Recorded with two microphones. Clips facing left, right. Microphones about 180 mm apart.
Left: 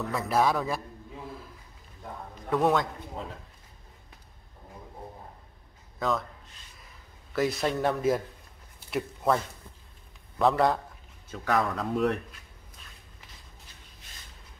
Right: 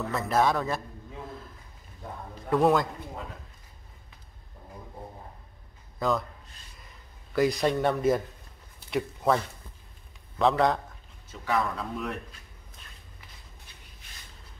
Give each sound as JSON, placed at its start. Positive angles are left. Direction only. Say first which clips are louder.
{"t": 0.1, "sound": "a man's voice", "louder": "even", "side_deg": 5}
{"t": 2.5, "sound": "speech", "louder": "right 2 dB", "side_deg": 0}
{"t": 5.9, "sound": "speech", "louder": "right 2 dB", "side_deg": 0}
{"t": 7.3, "sound": "speech", "louder": "right 3 dB", "side_deg": 0}
{"t": 10.4, "sound": "speech", "louder": "even", "side_deg": 5}
{"t": 11.4, "sound": "speech", "louder": "left 2 dB", "side_deg": 45}